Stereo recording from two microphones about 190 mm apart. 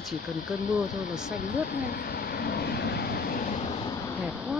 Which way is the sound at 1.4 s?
50° left (ahead or behind).